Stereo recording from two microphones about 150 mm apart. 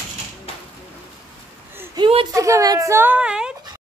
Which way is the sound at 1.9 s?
35° right (ahead or behind).